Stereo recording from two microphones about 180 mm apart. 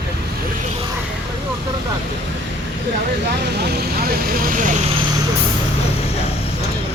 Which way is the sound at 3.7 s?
60° right (ahead or behind).